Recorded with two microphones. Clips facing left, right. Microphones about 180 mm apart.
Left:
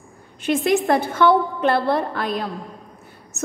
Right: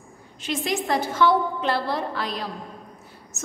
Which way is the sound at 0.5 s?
55° left (ahead or behind).